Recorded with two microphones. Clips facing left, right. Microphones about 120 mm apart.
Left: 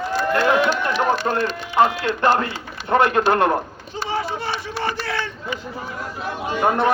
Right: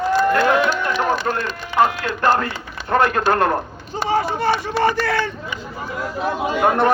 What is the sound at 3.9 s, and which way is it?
Speech, 45° right (ahead or behind).